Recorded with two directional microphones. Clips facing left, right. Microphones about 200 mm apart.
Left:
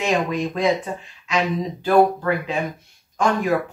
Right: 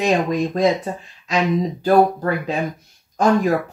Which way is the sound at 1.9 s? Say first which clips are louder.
Right 1 dB; 40° right (ahead or behind).